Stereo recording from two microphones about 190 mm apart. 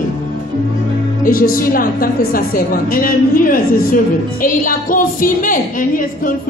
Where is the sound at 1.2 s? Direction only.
50° left (ahead or behind).